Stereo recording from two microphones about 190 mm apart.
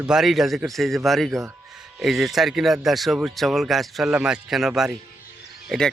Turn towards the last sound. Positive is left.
turn(degrees=5)  # may be behind; listen again after turning